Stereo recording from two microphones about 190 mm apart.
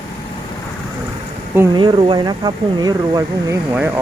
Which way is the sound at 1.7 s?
25° right (ahead or behind).